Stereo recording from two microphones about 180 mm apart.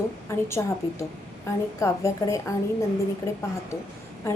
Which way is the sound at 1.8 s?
15° left (ahead or behind).